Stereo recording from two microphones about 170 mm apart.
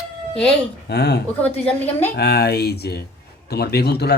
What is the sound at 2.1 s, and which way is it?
Speech, 70° left (ahead or behind).